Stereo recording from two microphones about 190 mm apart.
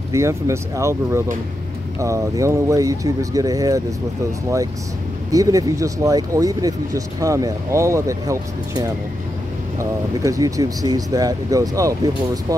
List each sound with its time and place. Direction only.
0.1 s speech: 15° right (ahead or behind)
5.3 s speech: 20° right (ahead or behind)